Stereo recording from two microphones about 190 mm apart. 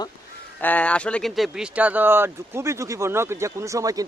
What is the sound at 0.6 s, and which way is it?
Speech, 5° left (ahead or behind).